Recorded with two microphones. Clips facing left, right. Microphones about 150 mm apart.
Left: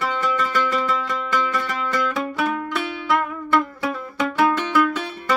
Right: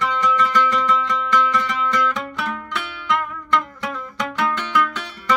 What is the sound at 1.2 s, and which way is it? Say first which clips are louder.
Music: right 3 dB; 45° left (ahead or behind).